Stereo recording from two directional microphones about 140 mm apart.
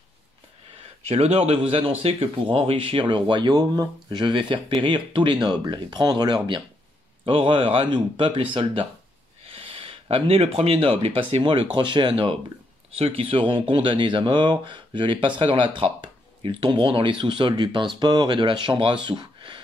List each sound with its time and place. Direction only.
1.0 s speech: 50° right (ahead or behind)